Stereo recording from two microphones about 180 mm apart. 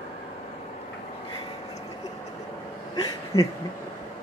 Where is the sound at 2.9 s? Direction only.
20° left (ahead or behind).